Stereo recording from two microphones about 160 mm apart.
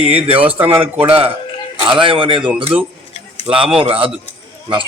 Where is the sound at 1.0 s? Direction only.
35° right (ahead or behind).